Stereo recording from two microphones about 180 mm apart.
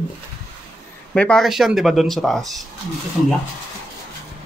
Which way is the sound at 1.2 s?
5° left (ahead or behind).